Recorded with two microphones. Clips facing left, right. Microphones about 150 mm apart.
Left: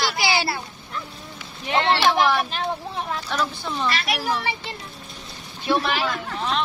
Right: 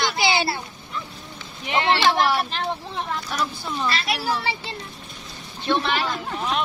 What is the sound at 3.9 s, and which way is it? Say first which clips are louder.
Speech: even; 30° right (ahead or behind).